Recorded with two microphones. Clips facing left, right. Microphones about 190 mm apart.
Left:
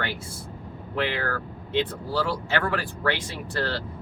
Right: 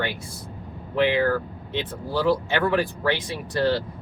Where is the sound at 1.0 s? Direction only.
20° right (ahead or behind).